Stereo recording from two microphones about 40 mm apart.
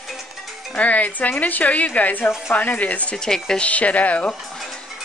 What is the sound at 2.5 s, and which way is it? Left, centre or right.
Speech, left.